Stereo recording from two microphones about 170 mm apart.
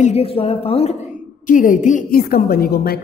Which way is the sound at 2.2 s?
65° left (ahead or behind).